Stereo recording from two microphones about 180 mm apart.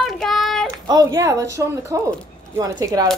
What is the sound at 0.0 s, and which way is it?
Child singing, centre (ahead or behind).